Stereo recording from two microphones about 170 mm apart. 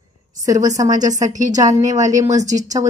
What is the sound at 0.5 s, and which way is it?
A woman's voice, 20° right (ahead or behind).